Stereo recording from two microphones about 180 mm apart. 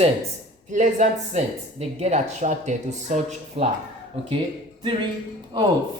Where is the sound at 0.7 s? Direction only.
45° right (ahead or behind).